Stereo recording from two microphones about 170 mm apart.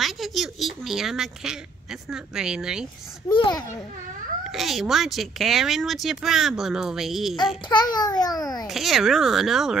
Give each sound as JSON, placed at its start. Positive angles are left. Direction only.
{"t": 0.0, "sound": "speech", "side_deg": 0}
{"t": 3.3, "sound": "a child's voice", "side_deg": 25}
{"t": 4.5, "sound": "speech", "side_deg": 0}
{"t": 7.6, "sound": "a child's voice", "side_deg": 25}
{"t": 8.6, "sound": "speech", "side_deg": 0}